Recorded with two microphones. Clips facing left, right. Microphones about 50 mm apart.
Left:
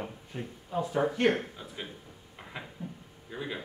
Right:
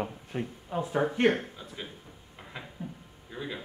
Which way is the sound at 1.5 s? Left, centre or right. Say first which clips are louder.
Even; centre.